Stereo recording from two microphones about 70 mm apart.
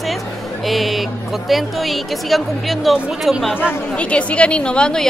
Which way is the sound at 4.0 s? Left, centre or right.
Centre.